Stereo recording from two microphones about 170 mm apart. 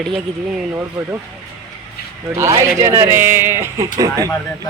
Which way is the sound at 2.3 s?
15° right (ahead or behind).